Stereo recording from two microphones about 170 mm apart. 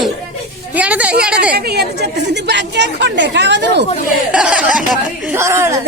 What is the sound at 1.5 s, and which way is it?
A woman's voice, 70° right (ahead or behind).